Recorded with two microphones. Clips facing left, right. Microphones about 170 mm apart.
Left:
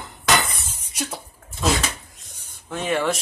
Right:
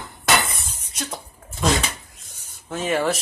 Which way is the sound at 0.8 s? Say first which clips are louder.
Left 3 dB; 10° left (ahead or behind).